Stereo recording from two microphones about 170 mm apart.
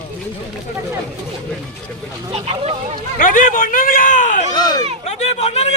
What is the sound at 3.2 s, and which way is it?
Speech, 55° left (ahead or behind).